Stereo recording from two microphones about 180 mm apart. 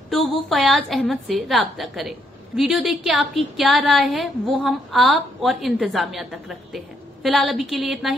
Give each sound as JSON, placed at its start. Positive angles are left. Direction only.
{"t": 0.1, "sound": "a woman's voice", "side_deg": 0}